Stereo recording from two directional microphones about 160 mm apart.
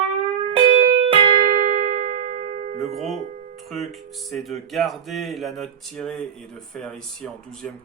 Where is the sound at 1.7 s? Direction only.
55° right (ahead or behind).